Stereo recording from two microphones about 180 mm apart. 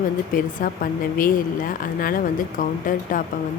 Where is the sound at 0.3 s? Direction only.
50° left (ahead or behind).